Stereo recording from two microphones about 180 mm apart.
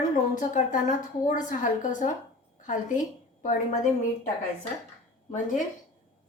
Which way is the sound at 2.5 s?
45° left (ahead or behind).